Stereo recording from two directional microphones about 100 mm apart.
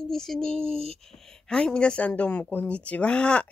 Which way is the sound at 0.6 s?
75° right (ahead or behind).